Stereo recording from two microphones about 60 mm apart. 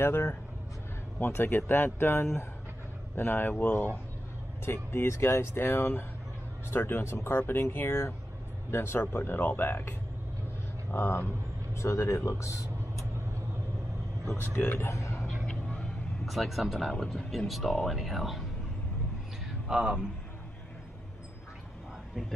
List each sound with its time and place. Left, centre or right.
0.0 s speech: left
4.6 s speech: left
10.9 s vehicle: left
11.8 s speech: left
12.3 s a sound: left
14.3 s speech: left
14.9 s a sound: left
16.3 s speech: centre
19.7 s a man's voice: centre